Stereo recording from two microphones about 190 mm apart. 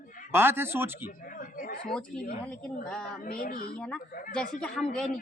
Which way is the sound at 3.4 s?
50° left (ahead or behind).